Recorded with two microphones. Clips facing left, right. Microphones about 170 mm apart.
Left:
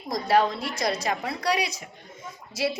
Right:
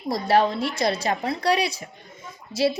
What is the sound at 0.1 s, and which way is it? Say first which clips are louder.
A woman's voice: right 2 dB; 30° right (ahead or behind).